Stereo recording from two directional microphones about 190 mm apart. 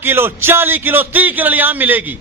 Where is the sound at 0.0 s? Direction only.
10° right (ahead or behind).